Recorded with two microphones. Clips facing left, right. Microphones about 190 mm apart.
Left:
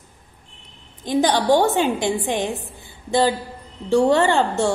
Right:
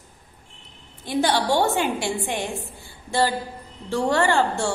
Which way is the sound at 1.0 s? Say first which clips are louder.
Left 4 dB; 15° left (ahead or behind).